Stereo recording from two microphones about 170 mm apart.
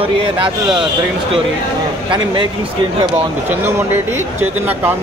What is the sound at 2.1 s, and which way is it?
Speech, 30° right (ahead or behind).